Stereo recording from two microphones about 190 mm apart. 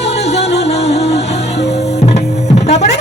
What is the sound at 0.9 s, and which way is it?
Music, 30° left (ahead or behind).